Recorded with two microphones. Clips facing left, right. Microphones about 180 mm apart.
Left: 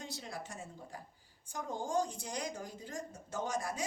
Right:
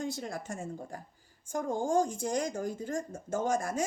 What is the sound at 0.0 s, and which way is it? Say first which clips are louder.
Speech: right 8 dB; 50° right (ahead or behind).